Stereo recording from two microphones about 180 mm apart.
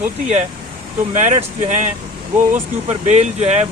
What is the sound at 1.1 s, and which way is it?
Speech, 40° right (ahead or behind).